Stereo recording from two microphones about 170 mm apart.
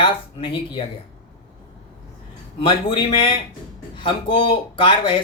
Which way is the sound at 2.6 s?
30° left (ahead or behind).